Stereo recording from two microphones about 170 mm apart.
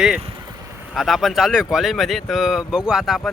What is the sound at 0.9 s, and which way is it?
Speech, centre (ahead or behind).